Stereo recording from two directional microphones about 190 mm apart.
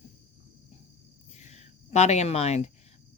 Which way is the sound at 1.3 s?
35° left (ahead or behind).